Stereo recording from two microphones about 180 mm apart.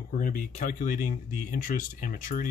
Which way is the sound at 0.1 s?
45° left (ahead or behind).